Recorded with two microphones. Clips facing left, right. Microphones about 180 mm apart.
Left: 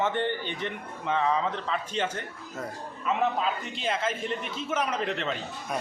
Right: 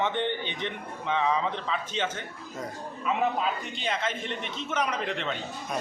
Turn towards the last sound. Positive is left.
turn(degrees=0)  # may be behind; listen again after turning